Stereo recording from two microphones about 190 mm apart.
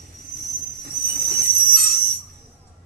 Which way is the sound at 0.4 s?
50° right (ahead or behind).